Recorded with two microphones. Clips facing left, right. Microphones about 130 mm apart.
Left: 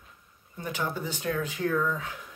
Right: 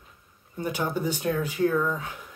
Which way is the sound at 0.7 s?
15° right (ahead or behind).